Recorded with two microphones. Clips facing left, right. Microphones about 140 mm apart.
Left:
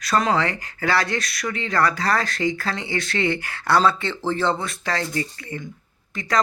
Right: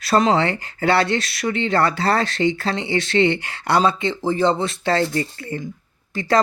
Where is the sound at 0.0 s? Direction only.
30° right (ahead or behind).